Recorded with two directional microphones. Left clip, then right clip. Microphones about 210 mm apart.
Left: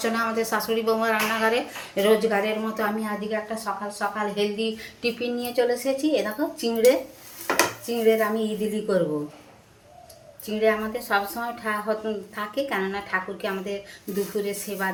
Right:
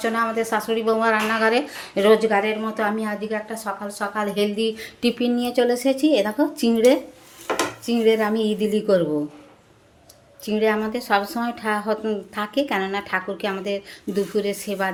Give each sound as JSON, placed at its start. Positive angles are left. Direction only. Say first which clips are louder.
{"t": 0.0, "sound": "a woman's voice", "louder": "right 3 dB", "side_deg": -15}
{"t": 3.8, "sound": "a woman's voice", "louder": "right 3 dB", "side_deg": -55}
{"t": 10.4, "sound": "a woman's voice", "louder": "right 2 dB", "side_deg": -50}